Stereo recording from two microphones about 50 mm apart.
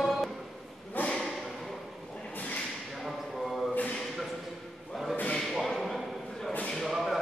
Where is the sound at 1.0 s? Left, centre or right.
Left.